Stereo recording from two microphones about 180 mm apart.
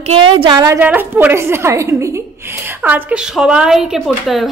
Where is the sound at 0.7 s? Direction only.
10° right (ahead or behind).